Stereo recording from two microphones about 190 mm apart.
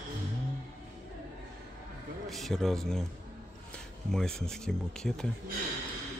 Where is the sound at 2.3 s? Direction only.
Centre (ahead or behind).